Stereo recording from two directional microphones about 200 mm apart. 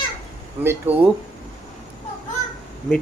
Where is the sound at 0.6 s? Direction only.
10° right (ahead or behind).